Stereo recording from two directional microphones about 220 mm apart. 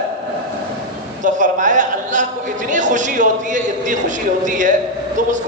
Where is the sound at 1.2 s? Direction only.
35° right (ahead or behind).